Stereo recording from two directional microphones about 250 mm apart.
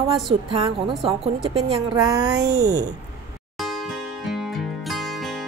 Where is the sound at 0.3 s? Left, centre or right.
Right.